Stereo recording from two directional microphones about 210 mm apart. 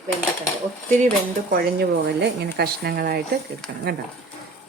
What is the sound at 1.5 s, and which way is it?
Speech, 45° right (ahead or behind).